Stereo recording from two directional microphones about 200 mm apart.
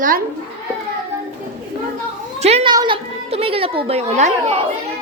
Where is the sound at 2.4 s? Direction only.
30° right (ahead or behind).